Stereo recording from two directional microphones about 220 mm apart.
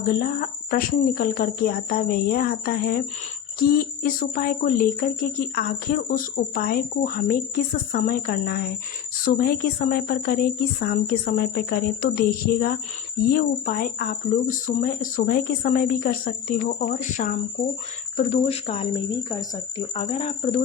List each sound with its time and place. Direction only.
0.1 s speech: 40° left (ahead or behind)